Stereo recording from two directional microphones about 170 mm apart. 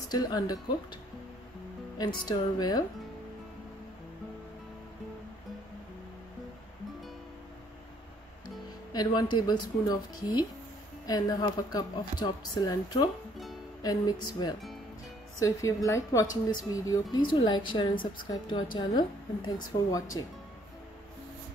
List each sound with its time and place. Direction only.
0.1 s speech: 20° left (ahead or behind)
2.0 s speech: 25° left (ahead or behind)
8.9 s speech: 25° left (ahead or behind)